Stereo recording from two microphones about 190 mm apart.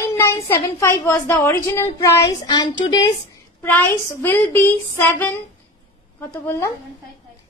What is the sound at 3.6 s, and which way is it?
A woman's voice, 10° left (ahead or behind).